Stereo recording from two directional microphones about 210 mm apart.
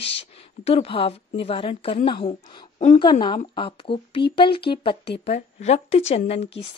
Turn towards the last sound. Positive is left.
turn(degrees=30)  # may be behind; listen again after turning